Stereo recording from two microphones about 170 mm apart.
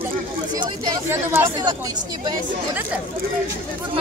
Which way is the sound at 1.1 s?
15° right (ahead or behind).